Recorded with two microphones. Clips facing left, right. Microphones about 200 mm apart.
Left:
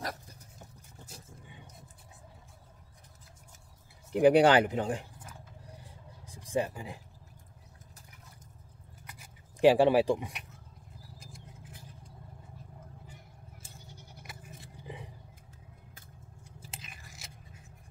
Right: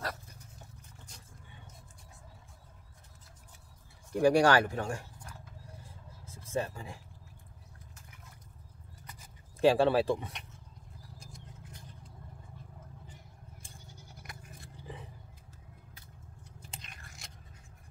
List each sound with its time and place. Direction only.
4.1 s speech: 20° left (ahead or behind)
5.2 s a sound: 15° left (ahead or behind)
9.0 s a sound: 10° left (ahead or behind)
11.1 s vehicle: 5° left (ahead or behind)
14.2 s toothbrush: 5° left (ahead or behind)
16.4 s biting: 5° left (ahead or behind)